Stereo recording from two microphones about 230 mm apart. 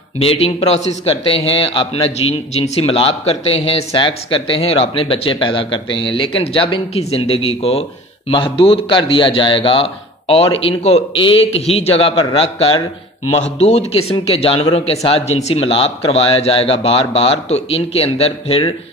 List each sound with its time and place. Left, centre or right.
0.2 s speech: left